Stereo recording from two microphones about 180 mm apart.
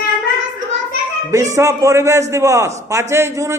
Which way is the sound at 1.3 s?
15° right (ahead or behind).